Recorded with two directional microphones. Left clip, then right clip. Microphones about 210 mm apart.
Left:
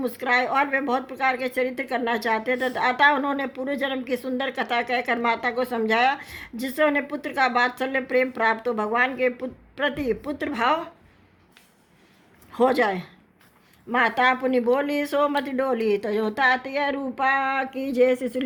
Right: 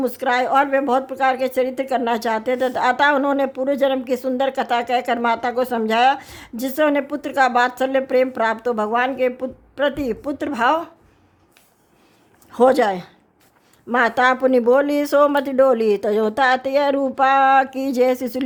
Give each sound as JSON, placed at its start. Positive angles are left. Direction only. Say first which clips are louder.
{"t": 0.0, "sound": "a woman's voice", "louder": "right 4 dB", "side_deg": -45}
{"t": 12.5, "sound": "a woman's voice", "louder": "right 6 dB", "side_deg": -45}